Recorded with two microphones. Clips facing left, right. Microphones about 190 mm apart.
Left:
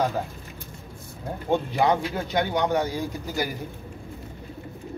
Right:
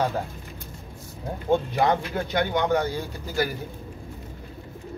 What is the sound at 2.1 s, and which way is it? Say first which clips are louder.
Speech: even; 15° left (ahead or behind).